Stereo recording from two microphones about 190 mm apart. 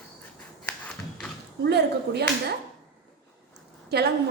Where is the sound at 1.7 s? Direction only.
60° right (ahead or behind).